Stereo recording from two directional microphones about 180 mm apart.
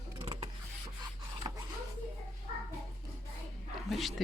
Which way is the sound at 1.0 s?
25° right (ahead or behind).